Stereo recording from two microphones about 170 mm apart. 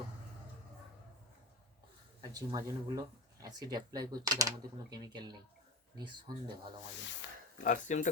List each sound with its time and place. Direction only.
2.3 s speech: 20° right (ahead or behind)
7.0 s speech: 90° left
7.6 s speech: 50° left (ahead or behind)